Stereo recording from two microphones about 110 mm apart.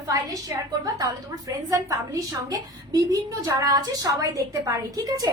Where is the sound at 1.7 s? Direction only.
35° right (ahead or behind).